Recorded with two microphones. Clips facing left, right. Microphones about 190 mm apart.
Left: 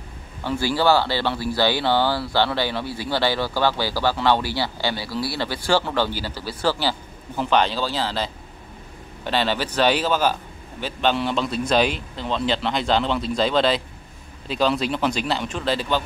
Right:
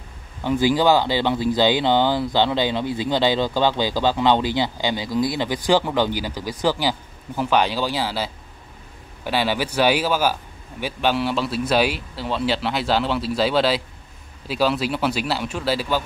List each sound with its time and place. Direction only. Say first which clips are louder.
0.4 s speech: right 4 dB; 15° right (ahead or behind)